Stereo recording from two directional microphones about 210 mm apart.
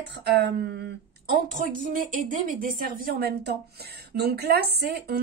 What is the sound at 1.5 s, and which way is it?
Speech, 40° right (ahead or behind).